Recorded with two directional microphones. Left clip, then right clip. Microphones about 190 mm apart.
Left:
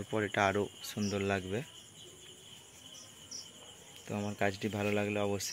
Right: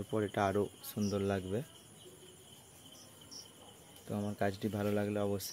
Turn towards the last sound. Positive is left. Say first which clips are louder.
# left 2 dB
turn(degrees=5)  # may be behind; listen again after turning